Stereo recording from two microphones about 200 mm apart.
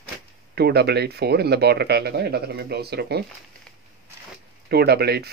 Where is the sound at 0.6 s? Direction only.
55° right (ahead or behind).